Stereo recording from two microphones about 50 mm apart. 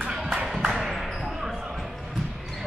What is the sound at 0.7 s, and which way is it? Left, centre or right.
Basketball bounce, centre.